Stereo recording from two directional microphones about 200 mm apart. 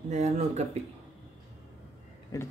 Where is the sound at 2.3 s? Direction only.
15° left (ahead or behind).